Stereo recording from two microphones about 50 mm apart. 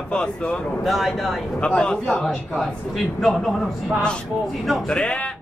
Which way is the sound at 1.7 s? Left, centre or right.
Centre.